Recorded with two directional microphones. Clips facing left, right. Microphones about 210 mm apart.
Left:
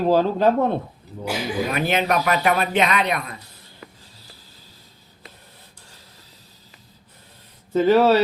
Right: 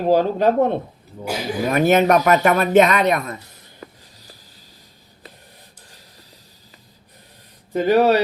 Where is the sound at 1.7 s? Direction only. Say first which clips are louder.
Right 9 dB; 45° right (ahead or behind).